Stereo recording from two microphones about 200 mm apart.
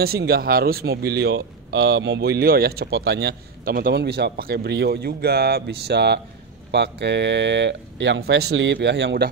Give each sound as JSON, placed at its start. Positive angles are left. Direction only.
{"t": 0.0, "sound": "speech", "side_deg": -50}